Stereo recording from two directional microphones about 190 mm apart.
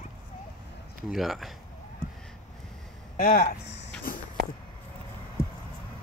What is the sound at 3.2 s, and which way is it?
Speech, 50° left (ahead or behind).